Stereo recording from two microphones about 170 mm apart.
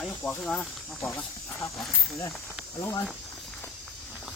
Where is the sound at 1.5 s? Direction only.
15° left (ahead or behind).